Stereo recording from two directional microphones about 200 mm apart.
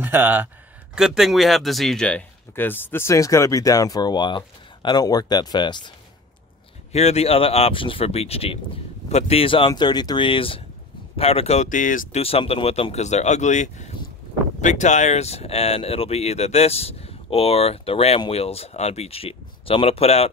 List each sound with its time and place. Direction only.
0.0 s speech: 10° right (ahead or behind); by 12.2 s 40° left (ahead or behind)
12.2 s speech: 30° left (ahead or behind)